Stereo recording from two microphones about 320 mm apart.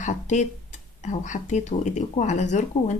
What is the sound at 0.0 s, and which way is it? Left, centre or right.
Speech, left.